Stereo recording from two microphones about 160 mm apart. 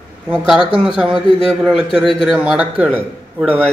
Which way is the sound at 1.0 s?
5° right (ahead or behind).